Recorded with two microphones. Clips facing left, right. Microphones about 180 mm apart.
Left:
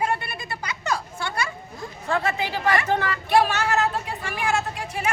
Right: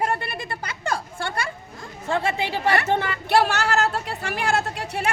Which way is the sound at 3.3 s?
75° right (ahead or behind).